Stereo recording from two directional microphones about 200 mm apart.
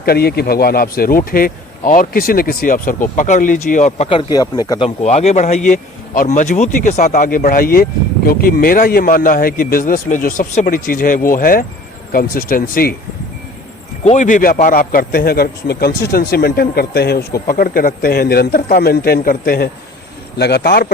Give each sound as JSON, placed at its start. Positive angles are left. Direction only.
{"t": 0.0, "sound": "speech", "side_deg": 50}
{"t": 5.0, "sound": "speech", "side_deg": 35}
{"t": 14.0, "sound": "speech", "side_deg": 35}